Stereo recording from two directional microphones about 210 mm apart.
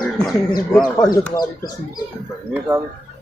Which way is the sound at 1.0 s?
15° left (ahead or behind).